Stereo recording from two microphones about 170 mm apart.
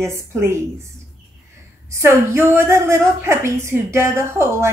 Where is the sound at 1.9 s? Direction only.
15° right (ahead or behind).